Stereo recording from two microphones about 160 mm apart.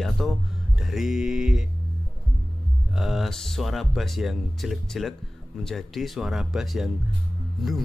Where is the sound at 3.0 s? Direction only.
Centre (ahead or behind).